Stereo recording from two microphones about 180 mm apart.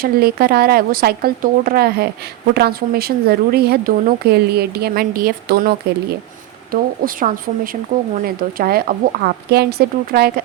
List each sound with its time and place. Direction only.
0.0 s speech: 60° right (ahead or behind)